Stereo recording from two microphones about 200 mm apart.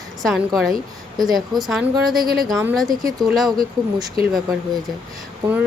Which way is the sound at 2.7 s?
Centre (ahead or behind).